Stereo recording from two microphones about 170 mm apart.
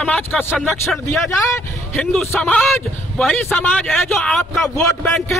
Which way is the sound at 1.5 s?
10° left (ahead or behind).